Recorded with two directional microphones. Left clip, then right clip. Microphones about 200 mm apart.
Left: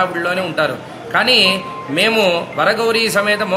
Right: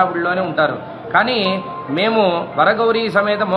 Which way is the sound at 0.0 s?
20° left (ahead or behind).